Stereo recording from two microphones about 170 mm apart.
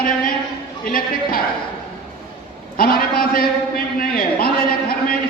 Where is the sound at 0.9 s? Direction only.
60° left (ahead or behind).